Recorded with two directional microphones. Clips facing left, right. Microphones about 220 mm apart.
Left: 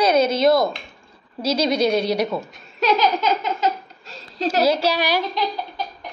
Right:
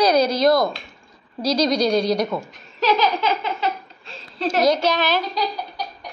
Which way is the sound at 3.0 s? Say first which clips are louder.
Left 1 dB; 45° left (ahead or behind).